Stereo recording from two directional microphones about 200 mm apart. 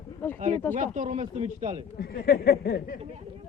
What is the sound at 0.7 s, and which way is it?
Speech, 40° right (ahead or behind).